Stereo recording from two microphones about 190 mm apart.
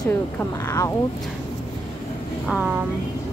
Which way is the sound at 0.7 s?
15° left (ahead or behind).